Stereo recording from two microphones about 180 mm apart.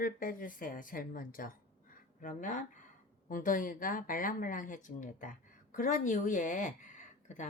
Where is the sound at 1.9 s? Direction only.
45° left (ahead or behind).